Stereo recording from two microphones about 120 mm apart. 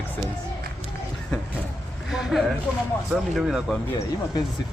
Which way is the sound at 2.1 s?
Centre (ahead or behind).